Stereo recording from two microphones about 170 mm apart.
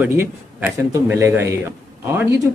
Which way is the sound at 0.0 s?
10° right (ahead or behind).